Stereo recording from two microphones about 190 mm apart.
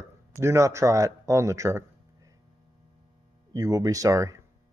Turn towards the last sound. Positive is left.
turn(degrees=-15)  # may be behind; listen again after turning